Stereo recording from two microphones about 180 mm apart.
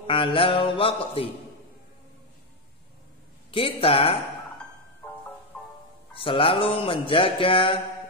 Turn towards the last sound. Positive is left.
turn(degrees=30)  # may be behind; listen again after turning